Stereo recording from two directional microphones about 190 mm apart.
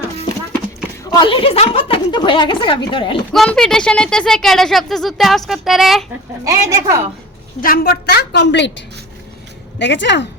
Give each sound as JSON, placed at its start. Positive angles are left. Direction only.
{"t": 1.1, "sound": "a woman's voice", "side_deg": 25}
{"t": 3.3, "sound": "speech", "side_deg": 5}
{"t": 6.4, "sound": "a woman's voice", "side_deg": -15}
{"t": 7.6, "sound": "a woman's voice", "side_deg": 50}
{"t": 9.7, "sound": "speech", "side_deg": 70}